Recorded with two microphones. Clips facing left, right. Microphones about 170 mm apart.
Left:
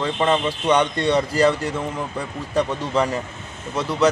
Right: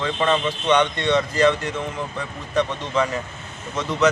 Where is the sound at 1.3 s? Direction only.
35° left (ahead or behind).